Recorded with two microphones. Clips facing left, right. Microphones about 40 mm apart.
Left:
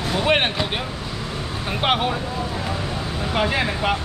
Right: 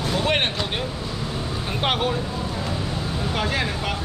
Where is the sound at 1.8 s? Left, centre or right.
Centre.